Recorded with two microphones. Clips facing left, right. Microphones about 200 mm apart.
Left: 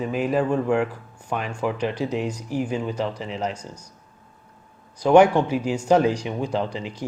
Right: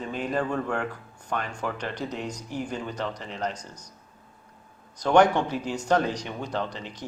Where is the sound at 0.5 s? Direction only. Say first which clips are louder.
Left 7 dB; 35° left (ahead or behind).